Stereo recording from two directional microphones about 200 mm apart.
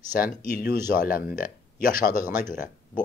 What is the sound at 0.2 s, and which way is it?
Speech, 50° left (ahead or behind).